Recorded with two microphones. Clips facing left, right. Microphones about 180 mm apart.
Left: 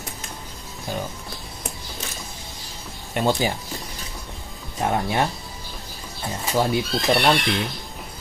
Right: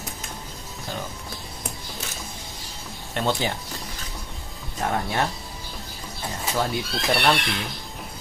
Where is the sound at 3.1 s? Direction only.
10° left (ahead or behind).